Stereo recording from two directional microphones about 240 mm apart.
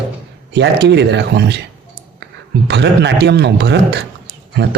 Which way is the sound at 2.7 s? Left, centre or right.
Right.